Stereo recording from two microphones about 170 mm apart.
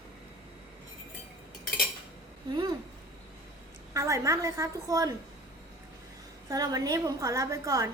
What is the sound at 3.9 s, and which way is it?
A woman's voice, 20° right (ahead or behind).